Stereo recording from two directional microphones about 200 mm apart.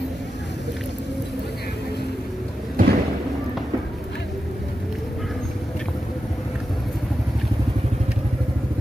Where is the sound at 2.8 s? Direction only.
45° right (ahead or behind).